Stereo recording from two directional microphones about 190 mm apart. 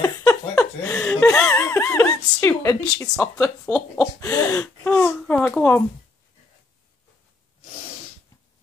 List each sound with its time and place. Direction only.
0.0 s laughter: 15° left (ahead or behind)
1.5 s speech: 15° left (ahead or behind)
3.7 s a sound: 5° left (ahead or behind)
4.2 s speech: 20° left (ahead or behind)